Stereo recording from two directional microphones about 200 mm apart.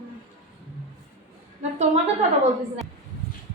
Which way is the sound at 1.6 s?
35° right (ahead or behind).